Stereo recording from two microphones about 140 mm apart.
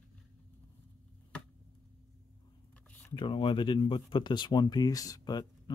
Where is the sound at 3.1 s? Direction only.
35° left (ahead or behind).